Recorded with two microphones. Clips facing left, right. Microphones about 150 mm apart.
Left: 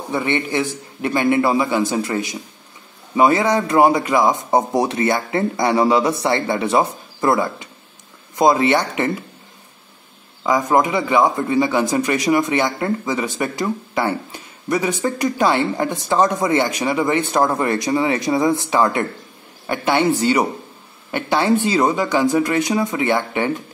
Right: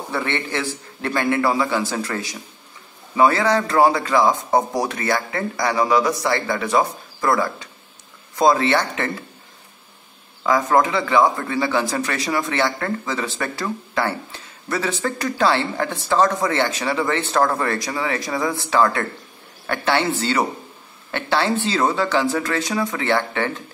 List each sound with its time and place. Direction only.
0.1 s speech: 15° left (ahead or behind)
10.4 s speech: 15° left (ahead or behind)